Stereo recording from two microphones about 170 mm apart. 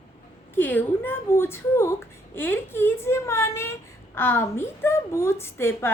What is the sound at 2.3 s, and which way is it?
Speech, 15° left (ahead or behind).